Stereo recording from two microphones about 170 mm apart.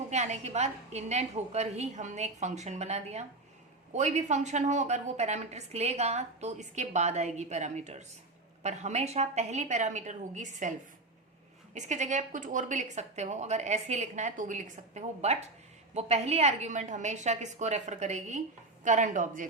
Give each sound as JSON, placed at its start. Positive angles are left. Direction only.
{"t": 0.1, "sound": "a woman's voice", "side_deg": -40}